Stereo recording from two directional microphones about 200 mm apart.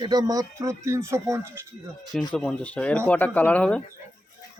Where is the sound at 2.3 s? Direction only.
5° left (ahead or behind).